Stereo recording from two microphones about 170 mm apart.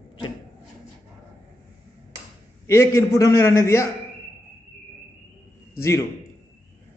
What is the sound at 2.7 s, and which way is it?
A man's voice, 15° left (ahead or behind).